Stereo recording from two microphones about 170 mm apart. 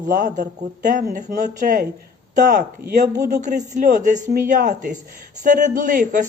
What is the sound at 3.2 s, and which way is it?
Speech, 45° right (ahead or behind).